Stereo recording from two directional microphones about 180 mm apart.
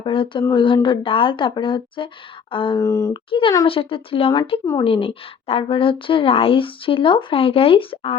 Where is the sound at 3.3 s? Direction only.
30° left (ahead or behind).